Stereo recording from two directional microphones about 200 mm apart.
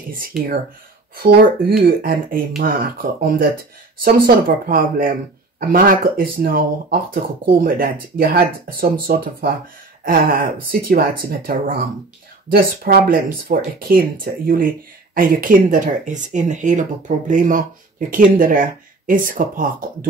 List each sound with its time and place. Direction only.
1.1 s speech: 45° right (ahead or behind)